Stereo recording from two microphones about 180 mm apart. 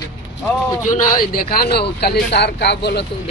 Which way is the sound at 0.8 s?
45° left (ahead or behind).